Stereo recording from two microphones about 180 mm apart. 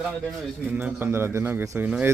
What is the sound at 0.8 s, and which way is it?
Speech, 10° right (ahead or behind).